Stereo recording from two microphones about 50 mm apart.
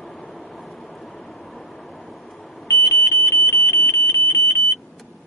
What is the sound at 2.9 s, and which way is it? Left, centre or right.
Alarm, left.